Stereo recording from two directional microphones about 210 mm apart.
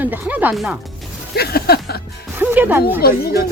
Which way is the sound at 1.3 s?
50° left (ahead or behind).